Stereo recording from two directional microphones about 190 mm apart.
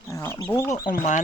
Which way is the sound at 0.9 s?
40° left (ahead or behind).